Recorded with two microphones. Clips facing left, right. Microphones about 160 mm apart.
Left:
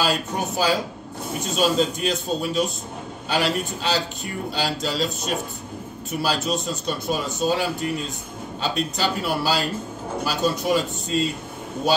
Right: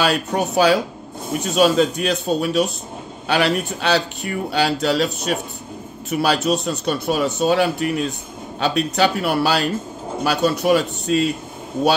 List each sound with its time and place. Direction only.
0.0 s a man's voice: 65° right (ahead or behind)